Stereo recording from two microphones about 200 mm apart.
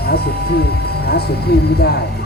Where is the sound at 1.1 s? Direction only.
50° left (ahead or behind).